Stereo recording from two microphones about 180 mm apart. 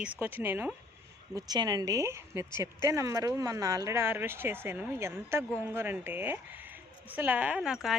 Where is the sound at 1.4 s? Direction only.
20° right (ahead or behind).